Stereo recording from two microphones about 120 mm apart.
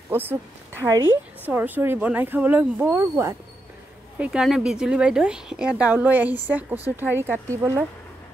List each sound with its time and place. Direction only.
0.1 s speech: 20° right (ahead or behind)
1.4 s a woman's voice: 15° right (ahead or behind)
4.2 s a woman's voice: 5° right (ahead or behind); by 7.8 s 25° right (ahead or behind)